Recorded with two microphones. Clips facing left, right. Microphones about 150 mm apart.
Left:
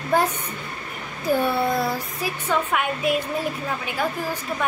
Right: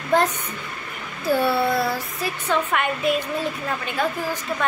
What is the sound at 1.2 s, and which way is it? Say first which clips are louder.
A woman's voice: right 1 dB; 15° left (ahead or behind).